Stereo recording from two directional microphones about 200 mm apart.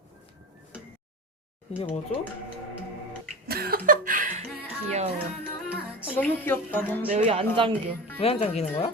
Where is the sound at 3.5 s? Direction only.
50° right (ahead or behind).